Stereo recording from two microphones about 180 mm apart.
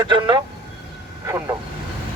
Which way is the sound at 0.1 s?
25° right (ahead or behind).